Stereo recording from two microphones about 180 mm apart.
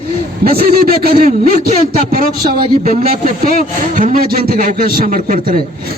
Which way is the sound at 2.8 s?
40° right (ahead or behind).